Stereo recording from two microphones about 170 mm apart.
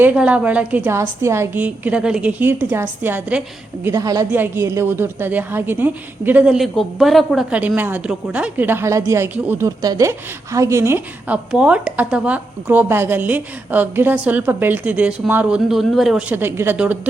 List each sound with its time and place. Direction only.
0.0 s a woman's voice: 5° right (ahead or behind)